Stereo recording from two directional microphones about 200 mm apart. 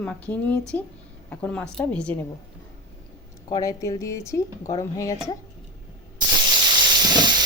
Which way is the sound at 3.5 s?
15° left (ahead or behind).